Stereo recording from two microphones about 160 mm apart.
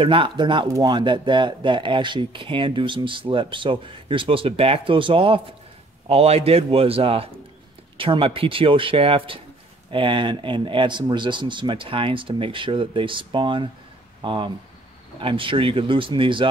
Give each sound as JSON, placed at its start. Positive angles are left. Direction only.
{"t": 0.0, "sound": "speech", "side_deg": -35}